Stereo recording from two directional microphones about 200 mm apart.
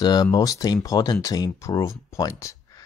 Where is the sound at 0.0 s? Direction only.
20° left (ahead or behind).